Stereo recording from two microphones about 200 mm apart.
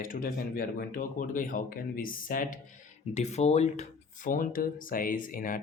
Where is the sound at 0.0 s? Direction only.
45° left (ahead or behind).